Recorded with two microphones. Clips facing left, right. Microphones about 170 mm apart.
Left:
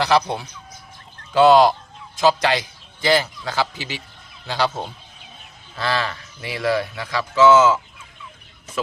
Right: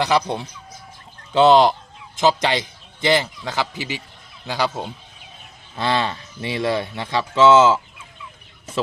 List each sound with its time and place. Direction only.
0.0 s a man's voice: 20° right (ahead or behind)